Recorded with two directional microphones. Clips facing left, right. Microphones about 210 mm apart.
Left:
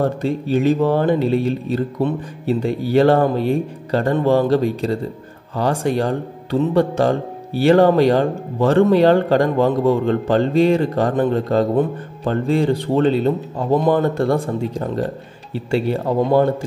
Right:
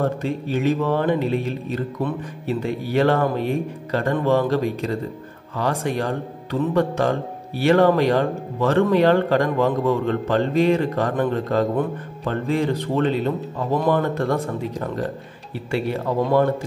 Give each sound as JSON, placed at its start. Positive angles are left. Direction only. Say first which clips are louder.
{"t": 0.0, "sound": "speech", "louder": "left 3 dB", "side_deg": 35}